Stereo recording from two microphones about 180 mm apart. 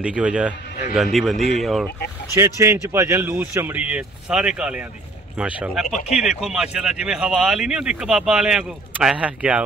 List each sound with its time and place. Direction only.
0.0 s speech: 5° right (ahead or behind)
2.3 s speech: 15° right (ahead or behind)